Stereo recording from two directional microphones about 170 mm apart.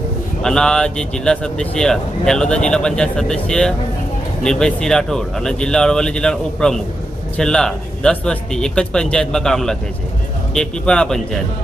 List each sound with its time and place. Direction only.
0.4 s speech: 5° left (ahead or behind)